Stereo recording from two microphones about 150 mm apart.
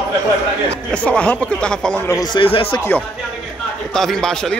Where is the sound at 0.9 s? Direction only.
10° left (ahead or behind).